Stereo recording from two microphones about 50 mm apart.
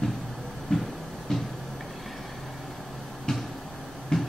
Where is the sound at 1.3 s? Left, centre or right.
Centre.